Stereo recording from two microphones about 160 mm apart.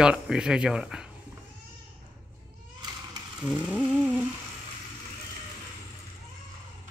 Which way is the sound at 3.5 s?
5° left (ahead or behind).